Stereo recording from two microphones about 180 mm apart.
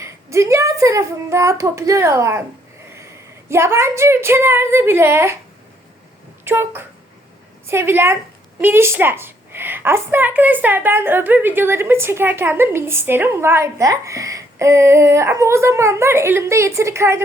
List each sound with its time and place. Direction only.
0.0 s a woman's voice: 15° right (ahead or behind)
3.5 s a woman's voice: 15° right (ahead or behind)
6.4 s a woman's voice: 10° right (ahead or behind)